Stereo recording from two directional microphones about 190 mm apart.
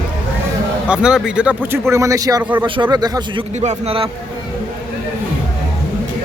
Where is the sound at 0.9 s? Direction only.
5° right (ahead or behind); by 3.4 s 20° right (ahead or behind).